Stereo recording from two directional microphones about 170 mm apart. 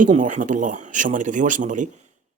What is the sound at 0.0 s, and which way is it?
Speech, 50° right (ahead or behind).